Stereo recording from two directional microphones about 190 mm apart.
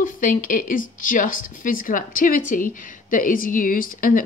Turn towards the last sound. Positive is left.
turn(degrees=45)  # may be behind; listen again after turning